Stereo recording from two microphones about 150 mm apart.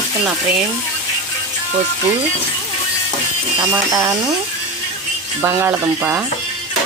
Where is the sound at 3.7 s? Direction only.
20° right (ahead or behind).